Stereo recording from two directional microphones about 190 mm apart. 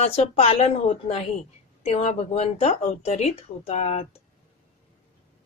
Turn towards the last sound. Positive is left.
turn(degrees=35)  # may be behind; listen again after turning